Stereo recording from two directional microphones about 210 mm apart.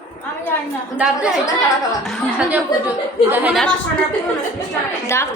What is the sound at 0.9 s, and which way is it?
A woman's voice, 5° right (ahead or behind).